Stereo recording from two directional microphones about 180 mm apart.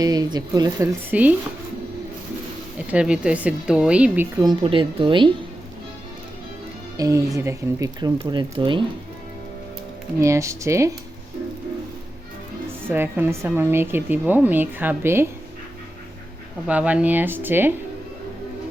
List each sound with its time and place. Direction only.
0.0 s speech: 20° right (ahead or behind)
1.1 s a woman's voice: 10° right (ahead or behind)
2.7 s a woman's voice: 5° right (ahead or behind)
4.4 s speech: 30° right (ahead or behind)
6.9 s speech: 20° right (ahead or behind)
10.2 s a woman's voice: 15° right (ahead or behind)
12.9 s a woman's voice: 10° right (ahead or behind)
16.6 s a woman's voice: 5° right (ahead or behind)